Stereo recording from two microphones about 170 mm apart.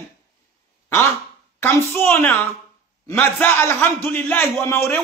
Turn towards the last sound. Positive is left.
turn(degrees=15)  # may be behind; listen again after turning